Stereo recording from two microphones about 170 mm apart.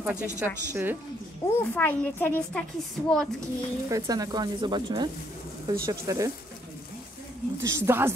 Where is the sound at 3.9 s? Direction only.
20° right (ahead or behind).